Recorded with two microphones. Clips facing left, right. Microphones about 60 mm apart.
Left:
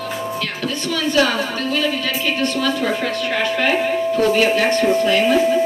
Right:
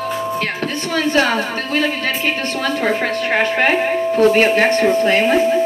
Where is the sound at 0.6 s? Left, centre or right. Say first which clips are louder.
Even; right.